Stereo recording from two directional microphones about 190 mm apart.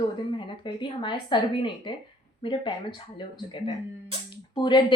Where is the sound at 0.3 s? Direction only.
25° left (ahead or behind).